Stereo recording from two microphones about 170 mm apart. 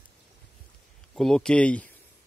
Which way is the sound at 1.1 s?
5° left (ahead or behind).